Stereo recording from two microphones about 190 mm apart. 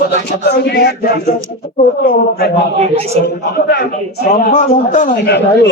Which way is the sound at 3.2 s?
60° left (ahead or behind).